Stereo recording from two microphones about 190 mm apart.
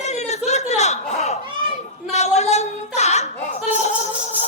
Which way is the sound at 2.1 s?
35° left (ahead or behind).